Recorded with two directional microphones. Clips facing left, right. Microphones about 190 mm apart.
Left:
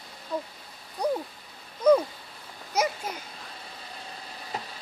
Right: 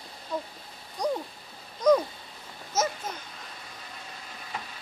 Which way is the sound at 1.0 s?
5° left (ahead or behind).